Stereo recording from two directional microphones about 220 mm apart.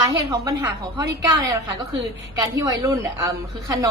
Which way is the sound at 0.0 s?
15° right (ahead or behind).